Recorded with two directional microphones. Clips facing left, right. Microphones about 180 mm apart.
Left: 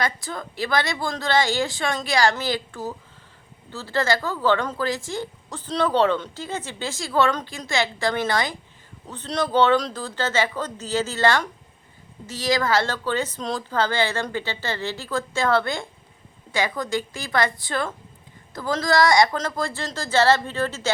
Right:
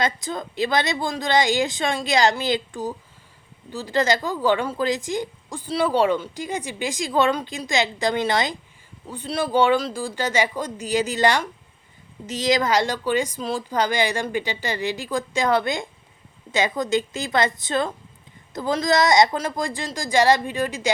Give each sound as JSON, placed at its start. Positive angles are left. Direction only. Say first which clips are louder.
{"t": 0.0, "sound": "a woman's voice", "louder": "right 2 dB", "side_deg": -20}
{"t": 9.0, "sound": "a woman's voice", "louder": "even", "side_deg": -10}